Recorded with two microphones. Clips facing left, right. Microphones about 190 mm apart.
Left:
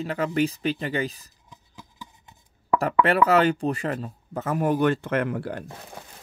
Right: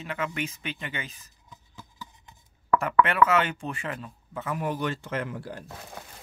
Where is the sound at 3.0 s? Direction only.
35° left (ahead or behind); by 5.6 s 65° left (ahead or behind).